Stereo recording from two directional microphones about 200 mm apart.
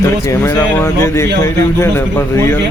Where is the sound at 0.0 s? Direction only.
15° left (ahead or behind).